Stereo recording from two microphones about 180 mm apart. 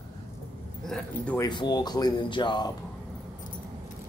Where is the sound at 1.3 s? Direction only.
20° left (ahead or behind).